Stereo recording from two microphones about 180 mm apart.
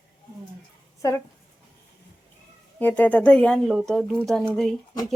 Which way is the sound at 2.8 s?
10° left (ahead or behind).